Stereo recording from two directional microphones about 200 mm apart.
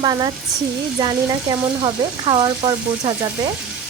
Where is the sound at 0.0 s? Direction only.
20° right (ahead or behind).